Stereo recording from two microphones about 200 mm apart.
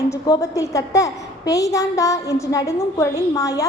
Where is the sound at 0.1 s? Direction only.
15° left (ahead or behind).